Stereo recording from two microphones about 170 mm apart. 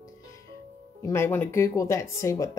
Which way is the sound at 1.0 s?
15° left (ahead or behind).